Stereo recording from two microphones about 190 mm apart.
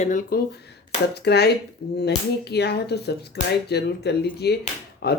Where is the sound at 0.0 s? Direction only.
40° left (ahead or behind).